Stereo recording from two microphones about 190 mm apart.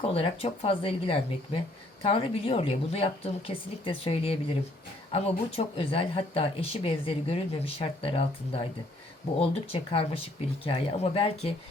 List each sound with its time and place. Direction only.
0.0 s speech: 30° left (ahead or behind)